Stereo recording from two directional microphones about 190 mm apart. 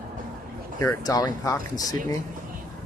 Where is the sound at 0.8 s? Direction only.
20° left (ahead or behind).